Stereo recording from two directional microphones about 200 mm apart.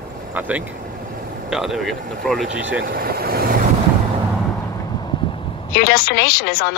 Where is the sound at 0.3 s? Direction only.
10° right (ahead or behind).